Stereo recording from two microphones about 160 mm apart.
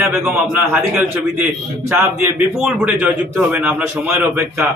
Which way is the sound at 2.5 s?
5° right (ahead or behind).